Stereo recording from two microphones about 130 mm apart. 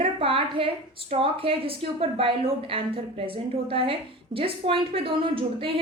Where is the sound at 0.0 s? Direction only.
45° right (ahead or behind).